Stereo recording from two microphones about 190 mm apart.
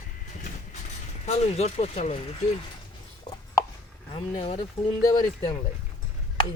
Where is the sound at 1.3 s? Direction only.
35° left (ahead or behind).